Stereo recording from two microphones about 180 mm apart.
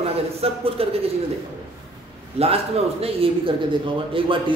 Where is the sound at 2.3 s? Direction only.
35° right (ahead or behind).